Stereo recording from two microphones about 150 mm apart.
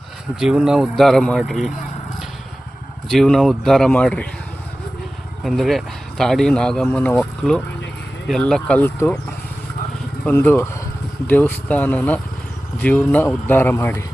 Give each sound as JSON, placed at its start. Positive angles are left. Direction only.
{"t": 0.3, "sound": "speech", "side_deg": -5}
{"t": 3.1, "sound": "speech", "side_deg": 0}
{"t": 5.4, "sound": "speech", "side_deg": 0}
{"t": 10.2, "sound": "speech", "side_deg": 15}